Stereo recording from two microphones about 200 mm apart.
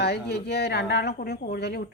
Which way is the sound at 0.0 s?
55° left (ahead or behind).